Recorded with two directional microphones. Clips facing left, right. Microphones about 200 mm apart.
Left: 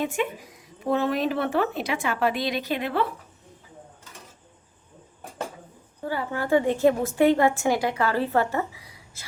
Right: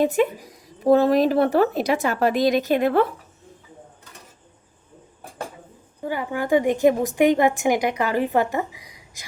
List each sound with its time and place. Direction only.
0.0 s speech: 40° right (ahead or behind)
6.0 s a woman's voice: 15° right (ahead or behind)